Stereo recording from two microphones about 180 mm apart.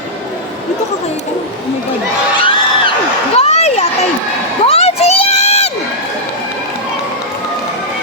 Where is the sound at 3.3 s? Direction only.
35° left (ahead or behind).